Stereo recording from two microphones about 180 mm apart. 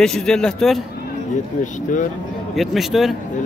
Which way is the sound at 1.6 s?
45° left (ahead or behind).